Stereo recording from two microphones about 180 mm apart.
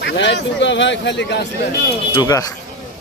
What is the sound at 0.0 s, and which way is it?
Speech, 75° left (ahead or behind).